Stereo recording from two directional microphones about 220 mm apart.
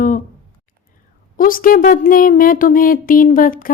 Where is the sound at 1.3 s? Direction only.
40° left (ahead or behind).